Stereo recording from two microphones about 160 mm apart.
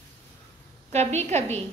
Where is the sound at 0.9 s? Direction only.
45° right (ahead or behind).